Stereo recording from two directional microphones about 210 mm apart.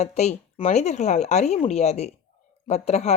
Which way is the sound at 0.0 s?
30° left (ahead or behind).